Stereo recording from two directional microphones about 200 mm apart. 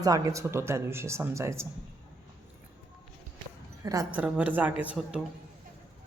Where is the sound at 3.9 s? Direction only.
15° right (ahead or behind).